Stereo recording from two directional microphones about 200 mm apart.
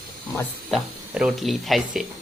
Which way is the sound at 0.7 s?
Centre (ahead or behind).